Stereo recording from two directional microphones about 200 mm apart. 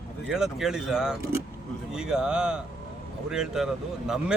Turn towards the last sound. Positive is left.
turn(degrees=0)  # may be behind; listen again after turning